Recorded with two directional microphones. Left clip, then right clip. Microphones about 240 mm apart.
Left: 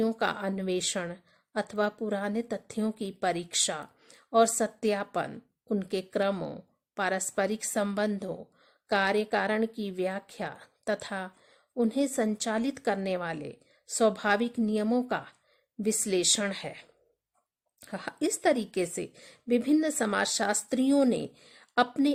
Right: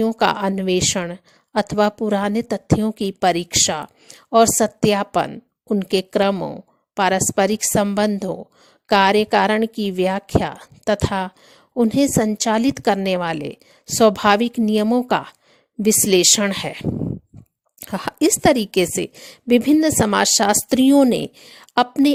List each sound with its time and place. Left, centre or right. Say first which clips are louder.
0.0 s speech: right 11 dB; right